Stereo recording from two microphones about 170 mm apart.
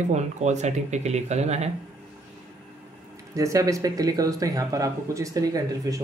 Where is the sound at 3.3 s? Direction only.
20° right (ahead or behind).